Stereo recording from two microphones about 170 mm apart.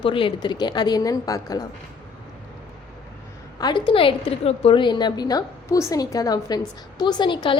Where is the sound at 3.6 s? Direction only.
30° left (ahead or behind).